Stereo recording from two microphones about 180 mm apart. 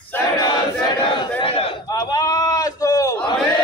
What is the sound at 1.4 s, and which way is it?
Battle cry, 30° left (ahead or behind).